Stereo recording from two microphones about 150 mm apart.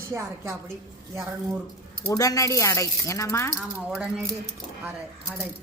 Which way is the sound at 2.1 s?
25° left (ahead or behind).